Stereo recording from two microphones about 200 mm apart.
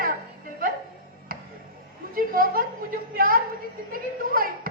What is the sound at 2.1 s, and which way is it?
A man's voice, 45° right (ahead or behind).